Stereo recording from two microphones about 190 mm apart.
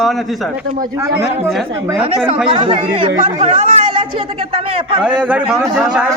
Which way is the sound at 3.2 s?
40° right (ahead or behind).